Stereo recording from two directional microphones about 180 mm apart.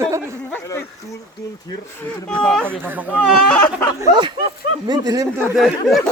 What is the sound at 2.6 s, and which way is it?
Speech, 10° right (ahead or behind).